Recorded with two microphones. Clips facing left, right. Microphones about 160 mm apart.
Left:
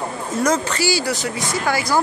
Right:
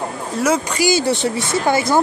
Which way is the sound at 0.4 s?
10° right (ahead or behind).